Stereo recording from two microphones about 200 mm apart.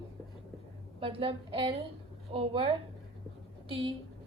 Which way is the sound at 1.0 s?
30° right (ahead or behind).